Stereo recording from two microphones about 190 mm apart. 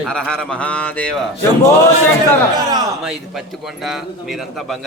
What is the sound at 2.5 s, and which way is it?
Speech, 20° right (ahead or behind).